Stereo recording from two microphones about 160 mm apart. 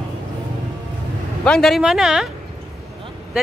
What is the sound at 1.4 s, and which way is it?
Speech, 5° left (ahead or behind).